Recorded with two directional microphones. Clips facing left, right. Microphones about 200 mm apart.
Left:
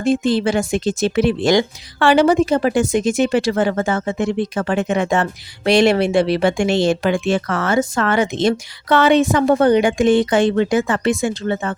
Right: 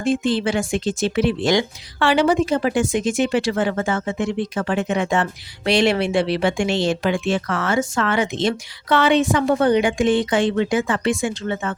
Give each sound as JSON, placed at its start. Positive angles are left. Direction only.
{"t": 0.0, "sound": "speech", "side_deg": 40}